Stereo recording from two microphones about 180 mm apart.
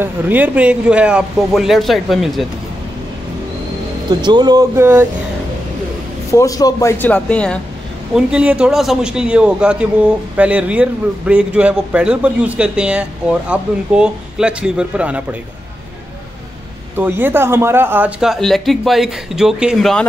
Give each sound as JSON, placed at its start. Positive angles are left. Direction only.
{"t": 0.0, "sound": "speech", "side_deg": -10}
{"t": 4.1, "sound": "speech", "side_deg": -25}
{"t": 6.3, "sound": "speech", "side_deg": 20}
{"t": 8.1, "sound": "a man's voice", "side_deg": -5}
{"t": 16.9, "sound": "speech", "side_deg": -10}